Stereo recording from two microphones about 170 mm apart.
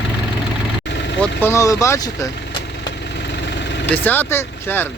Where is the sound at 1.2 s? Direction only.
15° left (ahead or behind).